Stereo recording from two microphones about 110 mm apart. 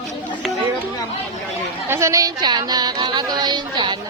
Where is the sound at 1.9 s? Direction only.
25° right (ahead or behind); by 3.9 s 45° right (ahead or behind).